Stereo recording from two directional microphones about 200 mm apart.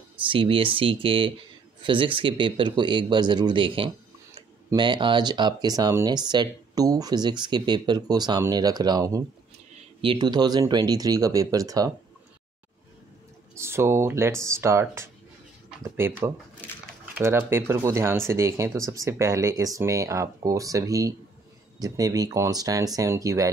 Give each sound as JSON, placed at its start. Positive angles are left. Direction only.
{"t": 0.3, "sound": "speech", "side_deg": -25}
{"t": 13.6, "sound": "speech", "side_deg": -10}
{"t": 16.6, "sound": "a sound", "side_deg": 10}
{"t": 17.1, "sound": "speech", "side_deg": -10}